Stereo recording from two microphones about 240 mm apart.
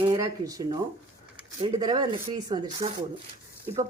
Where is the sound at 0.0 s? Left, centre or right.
Centre.